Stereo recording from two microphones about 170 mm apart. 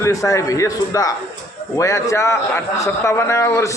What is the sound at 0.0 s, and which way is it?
A man's voice, 20° left (ahead or behind).